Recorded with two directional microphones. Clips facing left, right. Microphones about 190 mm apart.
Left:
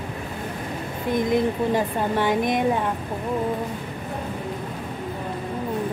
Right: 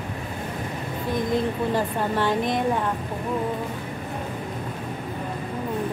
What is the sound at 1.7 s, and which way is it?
Speech, 15° left (ahead or behind).